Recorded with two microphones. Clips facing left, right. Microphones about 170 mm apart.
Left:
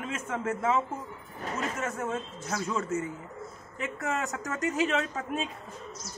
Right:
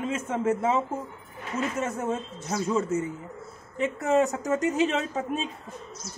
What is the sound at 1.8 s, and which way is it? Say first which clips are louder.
A woman's voice: right 4 dB; 20° right (ahead or behind).